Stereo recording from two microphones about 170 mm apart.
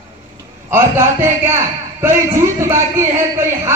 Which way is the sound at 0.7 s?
15° right (ahead or behind).